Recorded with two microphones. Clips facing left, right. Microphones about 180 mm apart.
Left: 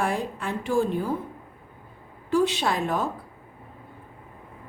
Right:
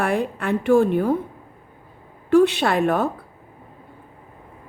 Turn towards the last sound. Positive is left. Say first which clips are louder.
# right 6 dB
turn(degrees=-65)  # may be behind; listen again after turning